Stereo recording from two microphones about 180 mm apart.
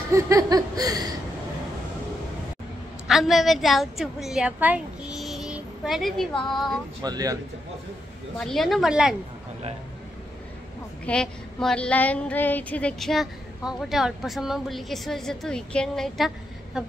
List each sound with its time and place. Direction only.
0.1 s chuckle: 20° right (ahead or behind)
3.1 s a woman's voice: centre (ahead or behind)
7.0 s chuckle: 20° right (ahead or behind)
8.4 s female singing: centre (ahead or behind)
11.1 s female singing: 5° left (ahead or behind)